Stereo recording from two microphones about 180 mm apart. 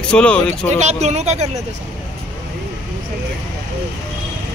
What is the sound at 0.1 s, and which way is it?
Speech, 5° left (ahead or behind).